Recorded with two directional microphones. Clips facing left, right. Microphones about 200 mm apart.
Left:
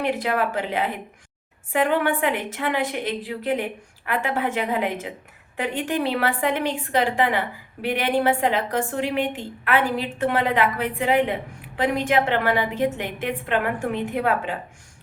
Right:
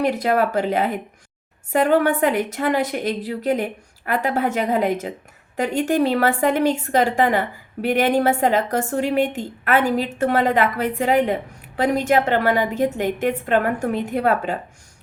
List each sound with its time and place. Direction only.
0.0 s a woman's voice: 40° right (ahead or behind)